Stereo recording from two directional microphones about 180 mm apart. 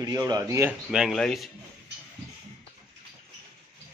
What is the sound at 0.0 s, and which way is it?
Speech, 20° right (ahead or behind).